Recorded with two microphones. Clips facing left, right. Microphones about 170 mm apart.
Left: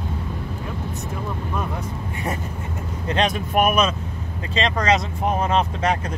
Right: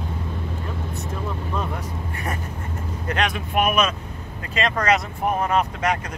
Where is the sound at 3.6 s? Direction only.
45° left (ahead or behind).